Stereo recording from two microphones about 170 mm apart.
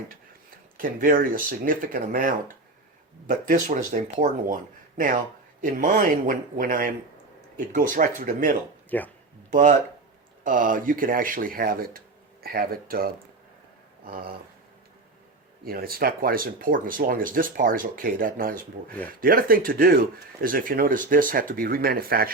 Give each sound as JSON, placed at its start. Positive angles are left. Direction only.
{"t": 0.8, "sound": "speech", "side_deg": -55}
{"t": 8.9, "sound": "speech", "side_deg": 10}
{"t": 9.5, "sound": "speech", "side_deg": -50}
{"t": 15.6, "sound": "speech", "side_deg": -60}